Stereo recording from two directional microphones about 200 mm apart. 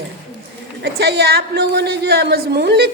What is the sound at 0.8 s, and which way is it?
A woman's voice, 55° right (ahead or behind).